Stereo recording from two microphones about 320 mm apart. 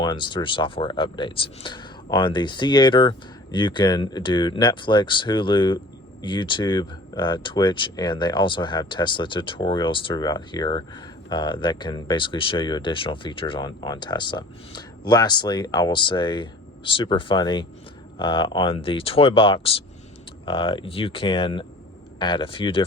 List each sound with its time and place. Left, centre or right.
0.0 s speech: centre